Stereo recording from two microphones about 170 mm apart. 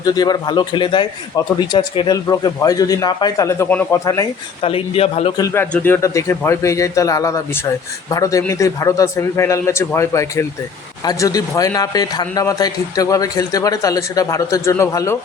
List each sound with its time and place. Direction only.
0.0 s a man's voice: 25° left (ahead or behind)
4.6 s a man's voice: 35° left (ahead or behind)
5.4 s a man's voice: 20° left (ahead or behind)